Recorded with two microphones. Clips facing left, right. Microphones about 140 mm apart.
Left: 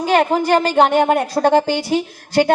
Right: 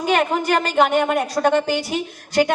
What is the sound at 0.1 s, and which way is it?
A woman's voice, 35° left (ahead or behind).